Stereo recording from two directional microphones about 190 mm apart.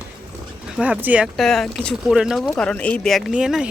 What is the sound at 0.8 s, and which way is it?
Speech, 5° right (ahead or behind).